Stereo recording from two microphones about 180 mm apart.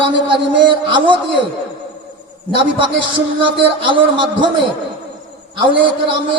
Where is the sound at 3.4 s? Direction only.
30° right (ahead or behind).